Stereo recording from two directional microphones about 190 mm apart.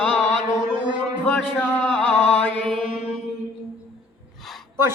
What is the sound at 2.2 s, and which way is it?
Mantra, 5° left (ahead or behind).